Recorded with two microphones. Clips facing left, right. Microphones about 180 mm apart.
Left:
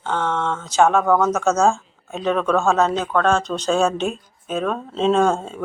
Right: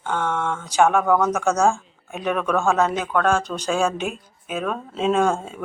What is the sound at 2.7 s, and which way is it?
Speech, 20° left (ahead or behind).